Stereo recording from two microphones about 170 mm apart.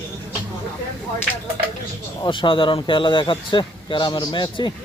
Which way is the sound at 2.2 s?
30° left (ahead or behind).